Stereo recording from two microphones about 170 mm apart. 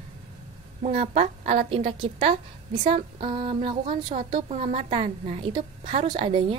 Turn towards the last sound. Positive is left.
turn(degrees=-30)  # may be behind; listen again after turning